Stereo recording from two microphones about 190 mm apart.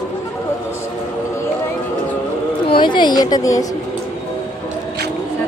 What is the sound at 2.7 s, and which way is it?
Speech, 25° left (ahead or behind).